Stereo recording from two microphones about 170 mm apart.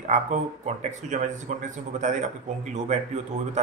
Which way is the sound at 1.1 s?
45° right (ahead or behind).